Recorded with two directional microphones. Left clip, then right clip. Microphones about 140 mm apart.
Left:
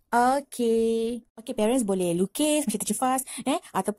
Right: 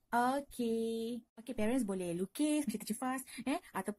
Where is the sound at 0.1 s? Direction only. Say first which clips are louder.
Left 11 dB; 45° left (ahead or behind).